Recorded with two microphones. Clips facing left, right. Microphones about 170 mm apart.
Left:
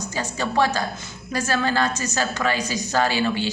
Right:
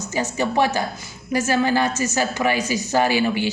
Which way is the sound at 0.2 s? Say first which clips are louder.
Right 2 dB; 15° right (ahead or behind).